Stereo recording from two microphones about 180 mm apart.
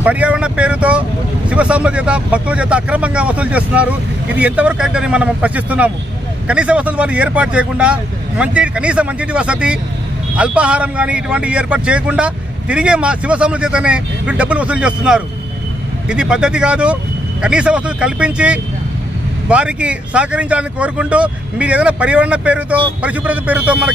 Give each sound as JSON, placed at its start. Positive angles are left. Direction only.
{"t": 0.0, "sound": "a man's voice", "side_deg": -5}